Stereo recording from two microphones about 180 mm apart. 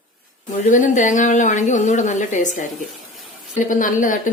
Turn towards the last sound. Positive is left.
turn(degrees=45)  # may be behind; listen again after turning